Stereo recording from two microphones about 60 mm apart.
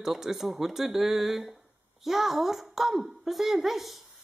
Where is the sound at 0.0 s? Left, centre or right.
Centre.